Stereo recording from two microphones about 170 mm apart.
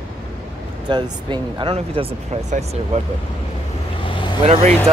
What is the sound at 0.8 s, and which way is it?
Speech, 25° right (ahead or behind).